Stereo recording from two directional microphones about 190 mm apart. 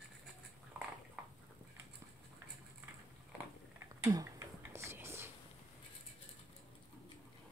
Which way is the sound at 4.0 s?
20° right (ahead or behind).